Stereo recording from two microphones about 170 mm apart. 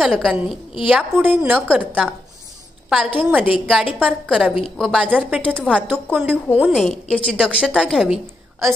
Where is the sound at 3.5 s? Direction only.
Centre (ahead or behind).